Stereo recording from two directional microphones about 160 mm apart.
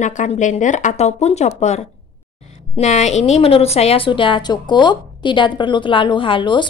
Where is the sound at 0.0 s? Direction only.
50° left (ahead or behind).